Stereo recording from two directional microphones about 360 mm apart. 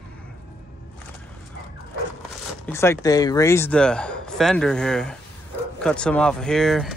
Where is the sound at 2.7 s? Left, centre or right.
Centre.